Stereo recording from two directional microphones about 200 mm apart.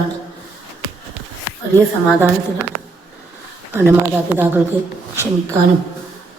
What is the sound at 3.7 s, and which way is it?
Speech, 10° right (ahead or behind).